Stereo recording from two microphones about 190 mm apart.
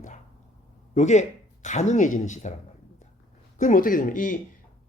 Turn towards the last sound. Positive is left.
turn(degrees=45)  # may be behind; listen again after turning